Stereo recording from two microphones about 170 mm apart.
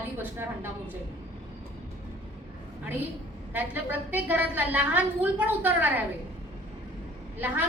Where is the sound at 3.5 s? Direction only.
10° right (ahead or behind).